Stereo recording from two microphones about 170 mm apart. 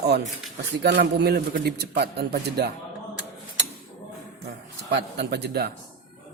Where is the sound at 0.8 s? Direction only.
75° right (ahead or behind).